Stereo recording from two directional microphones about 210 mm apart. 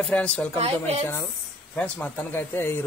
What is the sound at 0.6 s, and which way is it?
Speech, 30° right (ahead or behind).